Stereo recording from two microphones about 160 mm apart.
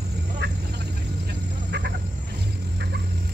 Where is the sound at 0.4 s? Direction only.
90° right.